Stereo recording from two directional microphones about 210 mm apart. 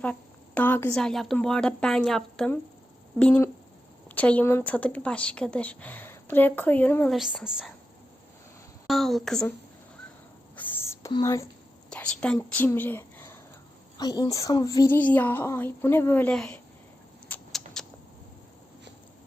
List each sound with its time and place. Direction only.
0.0 s a woman's voice: 5° left (ahead or behind)
8.9 s a woman's voice: centre (ahead or behind)
10.5 s whispering: 10° left (ahead or behind)
11.1 s speech: 15° left (ahead or behind)
11.9 s speech: 5° left (ahead or behind)
17.2 s rodents: 5° left (ahead or behind)